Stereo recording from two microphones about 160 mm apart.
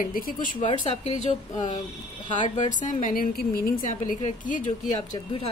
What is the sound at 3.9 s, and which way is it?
Speech, 45° left (ahead or behind).